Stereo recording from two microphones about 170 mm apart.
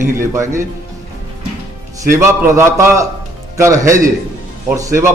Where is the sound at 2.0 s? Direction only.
15° right (ahead or behind).